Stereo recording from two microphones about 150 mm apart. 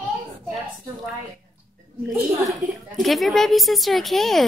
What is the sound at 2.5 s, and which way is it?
A woman's voice, centre (ahead or behind).